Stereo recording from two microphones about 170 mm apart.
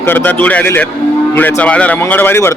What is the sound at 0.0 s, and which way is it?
Speech, 10° left (ahead or behind).